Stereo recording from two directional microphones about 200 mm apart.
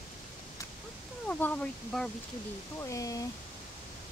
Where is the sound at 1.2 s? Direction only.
5° left (ahead or behind).